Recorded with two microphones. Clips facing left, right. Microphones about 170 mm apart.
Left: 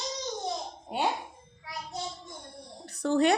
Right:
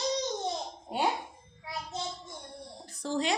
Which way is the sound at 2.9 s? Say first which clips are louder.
Left 7 dB; 65° left (ahead or behind).